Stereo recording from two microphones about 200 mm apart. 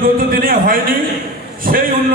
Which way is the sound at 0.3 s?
45° right (ahead or behind).